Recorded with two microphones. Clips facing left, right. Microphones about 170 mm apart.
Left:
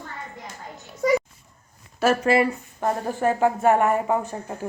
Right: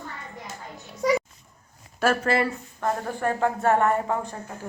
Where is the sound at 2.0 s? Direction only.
10° left (ahead or behind).